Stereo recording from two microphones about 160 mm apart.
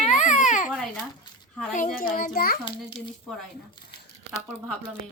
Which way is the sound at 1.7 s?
60° left (ahead or behind).